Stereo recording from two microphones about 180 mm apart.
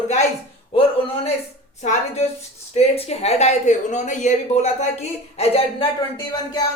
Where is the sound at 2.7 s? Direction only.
35° left (ahead or behind).